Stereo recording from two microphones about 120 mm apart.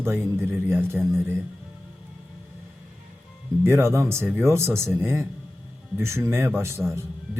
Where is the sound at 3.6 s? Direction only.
20° right (ahead or behind).